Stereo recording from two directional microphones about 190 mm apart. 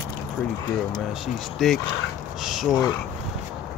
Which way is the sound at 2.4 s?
Centre (ahead or behind).